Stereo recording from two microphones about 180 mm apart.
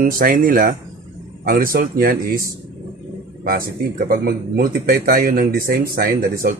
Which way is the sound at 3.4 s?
55° right (ahead or behind).